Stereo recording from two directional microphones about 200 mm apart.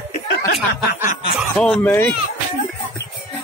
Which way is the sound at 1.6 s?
5° left (ahead or behind).